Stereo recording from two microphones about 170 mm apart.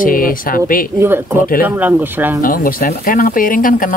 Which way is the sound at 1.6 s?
10° right (ahead or behind).